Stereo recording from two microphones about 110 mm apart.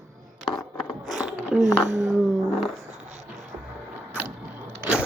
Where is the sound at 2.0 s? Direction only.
Centre (ahead or behind).